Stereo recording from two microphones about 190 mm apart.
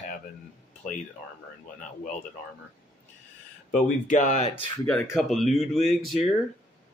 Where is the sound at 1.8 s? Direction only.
40° left (ahead or behind).